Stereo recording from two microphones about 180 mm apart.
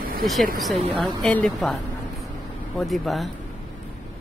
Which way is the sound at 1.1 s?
5° left (ahead or behind).